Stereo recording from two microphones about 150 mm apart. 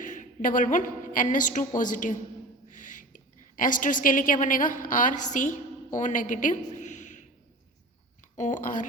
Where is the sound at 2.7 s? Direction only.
60° left (ahead or behind).